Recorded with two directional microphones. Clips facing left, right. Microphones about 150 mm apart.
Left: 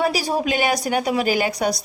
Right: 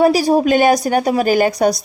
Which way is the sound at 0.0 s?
45° right (ahead or behind).